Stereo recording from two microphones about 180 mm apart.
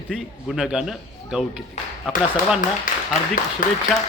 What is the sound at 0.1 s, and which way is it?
A man's voice, centre (ahead or behind).